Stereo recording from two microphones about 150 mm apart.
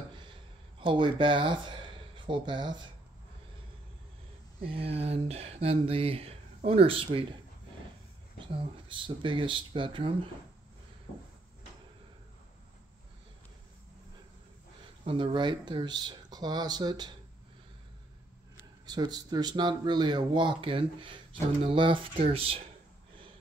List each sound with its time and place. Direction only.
0.3 s a sound: 35° right (ahead or behind)
4.6 s speech: 40° right (ahead or behind)
8.4 s speech: 35° right (ahead or behind)
15.0 s speech: 35° right (ahead or behind)
18.9 s speech: 25° right (ahead or behind)